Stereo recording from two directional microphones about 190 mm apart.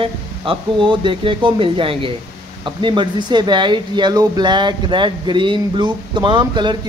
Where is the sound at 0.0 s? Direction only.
25° right (ahead or behind).